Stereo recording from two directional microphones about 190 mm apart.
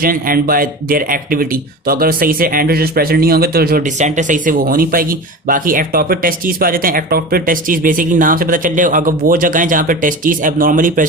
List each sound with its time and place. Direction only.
0.0 s speech: 50° right (ahead or behind)